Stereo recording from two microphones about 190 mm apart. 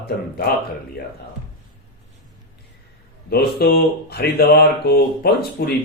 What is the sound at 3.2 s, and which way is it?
Speech, 55° left (ahead or behind).